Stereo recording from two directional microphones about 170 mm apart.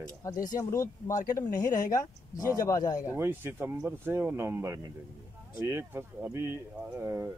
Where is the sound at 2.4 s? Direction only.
20° left (ahead or behind).